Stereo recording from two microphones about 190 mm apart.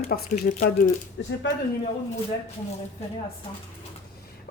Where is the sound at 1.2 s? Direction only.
75° left (ahead or behind).